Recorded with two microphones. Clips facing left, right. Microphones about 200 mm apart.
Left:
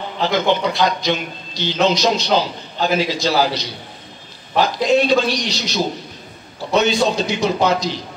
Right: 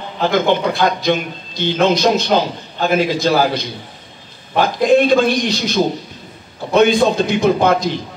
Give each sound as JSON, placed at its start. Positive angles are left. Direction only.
{"t": 0.2, "sound": "a man's voice", "side_deg": -50}